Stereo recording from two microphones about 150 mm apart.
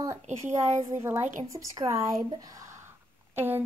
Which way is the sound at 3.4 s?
15° right (ahead or behind).